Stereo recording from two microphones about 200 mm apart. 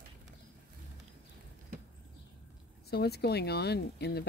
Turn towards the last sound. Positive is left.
turn(degrees=55)  # may be behind; listen again after turning